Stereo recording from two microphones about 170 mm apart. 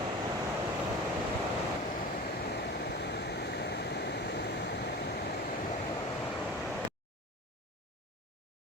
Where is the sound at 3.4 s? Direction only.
80° left.